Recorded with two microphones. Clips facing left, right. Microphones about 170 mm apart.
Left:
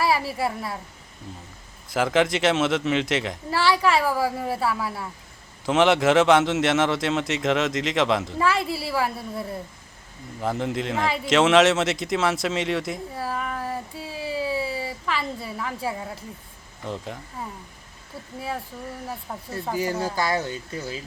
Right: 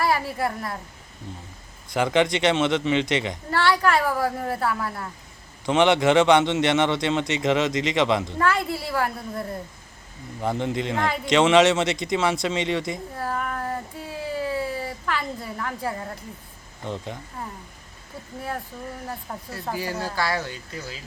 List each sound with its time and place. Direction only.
0.0 s a woman's voice: 5° left (ahead or behind)
1.9 s a man's voice: centre (ahead or behind)
19.7 s speech: 20° left (ahead or behind)